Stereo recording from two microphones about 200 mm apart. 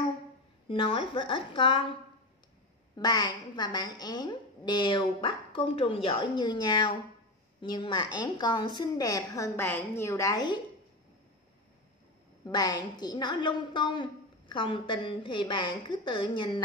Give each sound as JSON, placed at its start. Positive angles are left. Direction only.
{"t": 0.7, "sound": "a woman's voice", "side_deg": 25}
{"t": 3.0, "sound": "a woman's voice", "side_deg": 20}
{"t": 12.4, "sound": "a woman's voice", "side_deg": 20}